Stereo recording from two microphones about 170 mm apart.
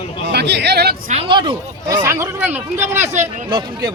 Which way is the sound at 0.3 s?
80° right.